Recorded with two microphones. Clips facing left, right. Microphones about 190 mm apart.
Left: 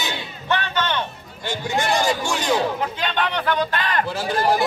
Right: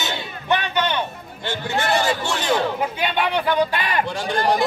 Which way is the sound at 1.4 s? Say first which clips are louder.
Even; 10° left (ahead or behind).